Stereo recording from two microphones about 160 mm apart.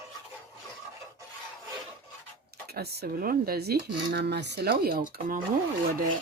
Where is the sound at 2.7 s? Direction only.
80° right; by 5.4 s 60° right (ahead or behind).